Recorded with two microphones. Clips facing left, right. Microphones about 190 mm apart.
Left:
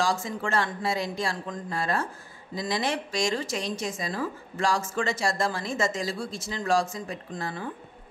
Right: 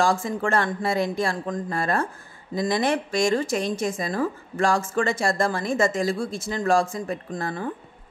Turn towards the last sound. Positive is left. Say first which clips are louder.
# right 5 dB
turn(degrees=-50)  # may be behind; listen again after turning